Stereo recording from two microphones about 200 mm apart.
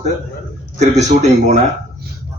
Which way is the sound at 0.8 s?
35° right (ahead or behind).